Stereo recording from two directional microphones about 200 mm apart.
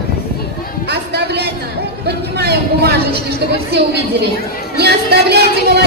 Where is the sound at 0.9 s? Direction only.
55° right (ahead or behind).